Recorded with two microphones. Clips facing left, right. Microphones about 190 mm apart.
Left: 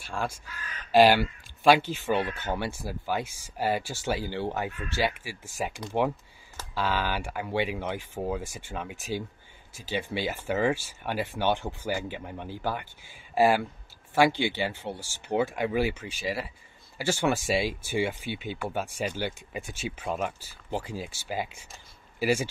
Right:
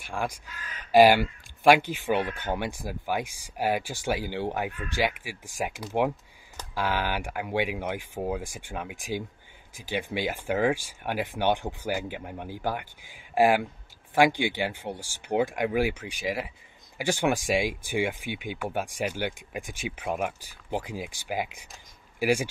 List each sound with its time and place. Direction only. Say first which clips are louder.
0.0 s speech: right 1 dB; 15° right (ahead or behind)